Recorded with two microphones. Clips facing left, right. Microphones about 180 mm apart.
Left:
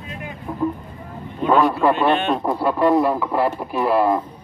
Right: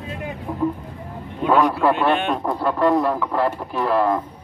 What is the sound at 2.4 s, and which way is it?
Speech, 5° left (ahead or behind).